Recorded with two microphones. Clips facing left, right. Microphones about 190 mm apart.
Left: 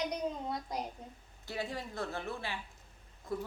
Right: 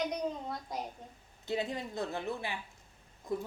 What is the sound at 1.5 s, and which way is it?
A woman's voice, 20° right (ahead or behind).